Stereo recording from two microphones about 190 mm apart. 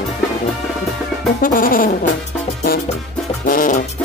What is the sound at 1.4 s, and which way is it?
Music, 50° left (ahead or behind).